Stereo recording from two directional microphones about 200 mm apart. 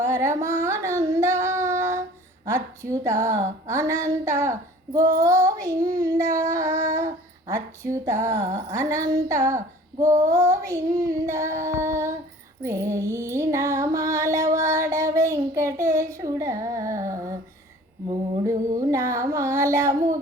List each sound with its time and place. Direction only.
0.0 s carnatic music: 15° right (ahead or behind)
0.4 s child singing: 15° right (ahead or behind)
12.6 s music: 15° right (ahead or behind)
18.1 s a sound: 15° right (ahead or behind)